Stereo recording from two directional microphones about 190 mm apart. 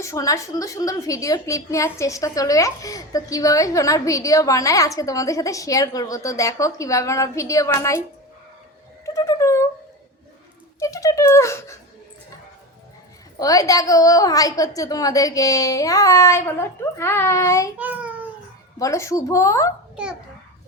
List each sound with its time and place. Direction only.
0.0 s a woman's voice: 15° left (ahead or behind)
9.0 s a sound: 15° left (ahead or behind)
10.8 s a sound: 15° left (ahead or behind)
13.4 s a woman's voice: 20° left (ahead or behind)
17.7 s child singing: 10° right (ahead or behind)
18.8 s a woman's voice: 15° left (ahead or behind)